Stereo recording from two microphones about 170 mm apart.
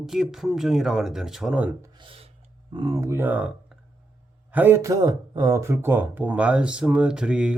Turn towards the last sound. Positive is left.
turn(degrees=-5)  # may be behind; listen again after turning